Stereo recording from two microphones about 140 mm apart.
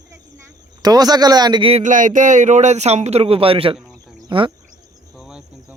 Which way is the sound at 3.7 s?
5° right (ahead or behind).